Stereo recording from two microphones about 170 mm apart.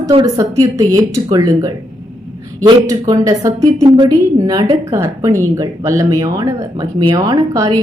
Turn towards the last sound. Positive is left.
turn(degrees=-25)  # may be behind; listen again after turning